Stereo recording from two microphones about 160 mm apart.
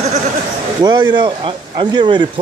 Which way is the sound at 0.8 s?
30° right (ahead or behind).